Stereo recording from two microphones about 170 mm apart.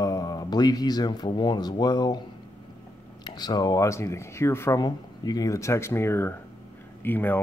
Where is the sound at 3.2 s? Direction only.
25° left (ahead or behind).